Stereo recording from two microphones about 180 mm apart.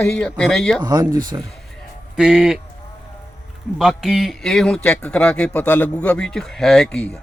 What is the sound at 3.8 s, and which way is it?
A man's voice, centre (ahead or behind).